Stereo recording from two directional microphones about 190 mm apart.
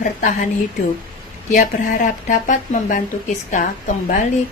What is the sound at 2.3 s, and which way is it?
Speech, 40° left (ahead or behind).